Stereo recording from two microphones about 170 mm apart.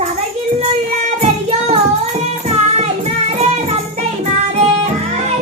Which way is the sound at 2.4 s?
40° right (ahead or behind).